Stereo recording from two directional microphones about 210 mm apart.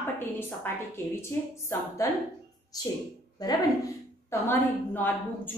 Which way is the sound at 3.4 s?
20° left (ahead or behind).